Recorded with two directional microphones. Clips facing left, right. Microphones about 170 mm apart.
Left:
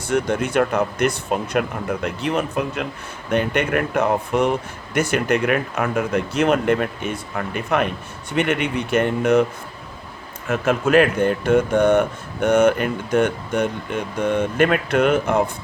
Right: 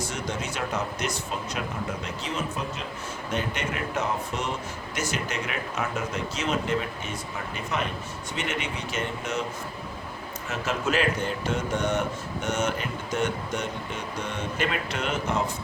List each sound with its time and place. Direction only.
0.0 s speech: 60° left (ahead or behind)
10.5 s speech: 55° left (ahead or behind)